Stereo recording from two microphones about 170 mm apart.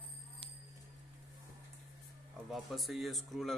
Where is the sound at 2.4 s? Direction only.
Centre (ahead or behind).